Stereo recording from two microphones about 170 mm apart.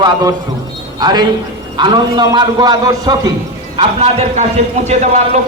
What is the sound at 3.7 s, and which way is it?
Speech, 40° right (ahead or behind).